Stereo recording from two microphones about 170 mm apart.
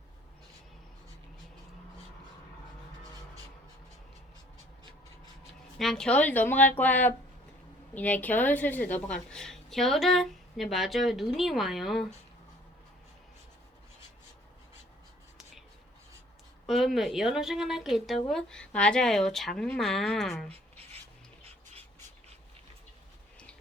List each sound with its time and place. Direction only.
5.7 s a woman's voice: 5° left (ahead or behind)
16.6 s speech: centre (ahead or behind)
20.5 s writing: 35° right (ahead or behind)